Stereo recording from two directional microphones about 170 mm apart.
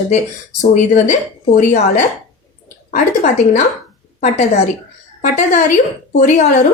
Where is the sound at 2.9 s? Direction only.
45° left (ahead or behind).